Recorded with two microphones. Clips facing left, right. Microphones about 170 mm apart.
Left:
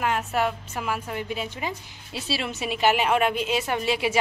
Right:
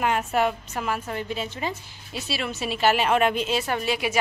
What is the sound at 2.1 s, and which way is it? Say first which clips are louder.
Speech: even; 30° left (ahead or behind).